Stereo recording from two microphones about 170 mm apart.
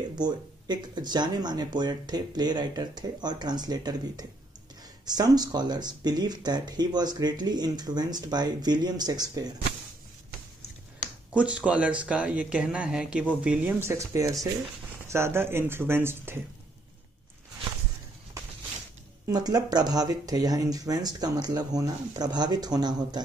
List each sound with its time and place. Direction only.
0.1 s speech: 25° right (ahead or behind)
11.3 s speech: 5° right (ahead or behind)
19.2 s speech: 20° right (ahead or behind)